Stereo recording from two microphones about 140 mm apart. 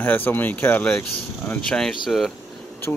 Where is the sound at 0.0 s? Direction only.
15° left (ahead or behind).